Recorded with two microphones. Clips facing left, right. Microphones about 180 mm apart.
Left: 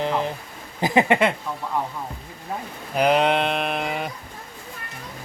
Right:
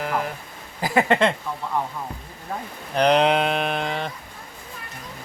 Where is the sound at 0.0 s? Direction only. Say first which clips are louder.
Left 2 dB; 25° left (ahead or behind).